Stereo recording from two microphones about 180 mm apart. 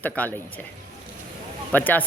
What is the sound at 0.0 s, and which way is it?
Speech, 10° left (ahead or behind).